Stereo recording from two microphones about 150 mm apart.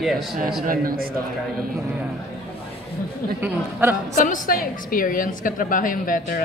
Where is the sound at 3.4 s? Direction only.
15° right (ahead or behind).